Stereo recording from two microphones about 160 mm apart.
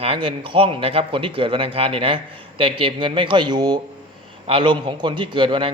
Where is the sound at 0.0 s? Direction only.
35° right (ahead or behind).